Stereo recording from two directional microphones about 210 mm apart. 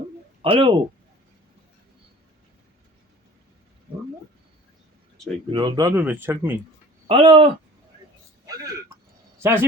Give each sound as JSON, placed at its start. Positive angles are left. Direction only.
{"t": 0.4, "sound": "speech", "side_deg": -25}
{"t": 5.5, "sound": "speech", "side_deg": -20}
{"t": 5.9, "sound": "speech", "side_deg": -10}
{"t": 7.1, "sound": "speech", "side_deg": -25}
{"t": 8.4, "sound": "a man's voice", "side_deg": -15}